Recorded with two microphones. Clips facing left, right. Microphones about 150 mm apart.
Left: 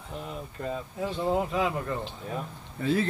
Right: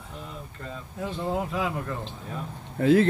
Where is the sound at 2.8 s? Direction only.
90° right.